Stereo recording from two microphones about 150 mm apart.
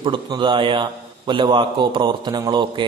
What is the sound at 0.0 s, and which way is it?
A man's voice, 35° right (ahead or behind).